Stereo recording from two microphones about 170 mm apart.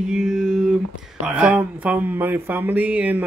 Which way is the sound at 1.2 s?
5° right (ahead or behind).